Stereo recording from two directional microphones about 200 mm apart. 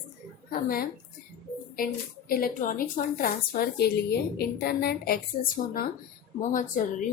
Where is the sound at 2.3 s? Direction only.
45° left (ahead or behind).